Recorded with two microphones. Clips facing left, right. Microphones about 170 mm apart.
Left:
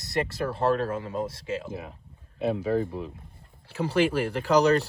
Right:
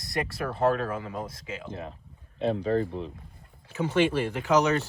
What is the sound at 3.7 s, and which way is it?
Speech, 35° left (ahead or behind).